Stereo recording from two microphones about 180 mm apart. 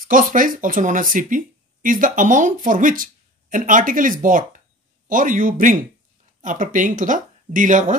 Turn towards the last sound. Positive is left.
turn(degrees=-45)  # may be behind; listen again after turning